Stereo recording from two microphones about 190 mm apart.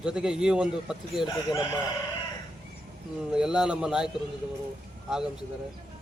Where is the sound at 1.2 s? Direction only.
25° left (ahead or behind).